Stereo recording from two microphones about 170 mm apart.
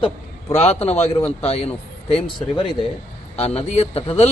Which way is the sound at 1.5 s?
35° left (ahead or behind).